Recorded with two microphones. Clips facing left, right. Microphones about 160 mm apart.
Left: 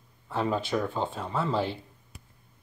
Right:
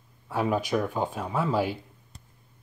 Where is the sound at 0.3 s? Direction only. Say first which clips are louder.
Right 2 dB; 10° right (ahead or behind).